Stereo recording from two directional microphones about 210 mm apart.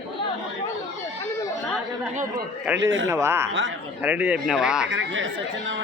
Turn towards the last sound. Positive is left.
turn(degrees=-65)  # may be behind; listen again after turning